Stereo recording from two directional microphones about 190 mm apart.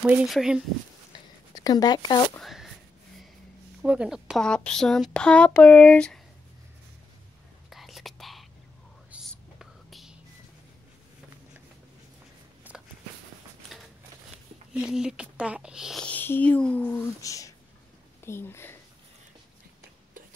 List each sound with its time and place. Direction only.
0.0 s speech: 5° right (ahead or behind)
1.1 s a sound: 20° left (ahead or behind)
2.3 s speech: centre (ahead or behind)
3.8 s speech: 5° right (ahead or behind)
7.7 s whispering: centre (ahead or behind)
12.7 s a sound: 10° right (ahead or behind)
14.7 s speech: 5° right (ahead or behind); by 18.8 s 10° left (ahead or behind)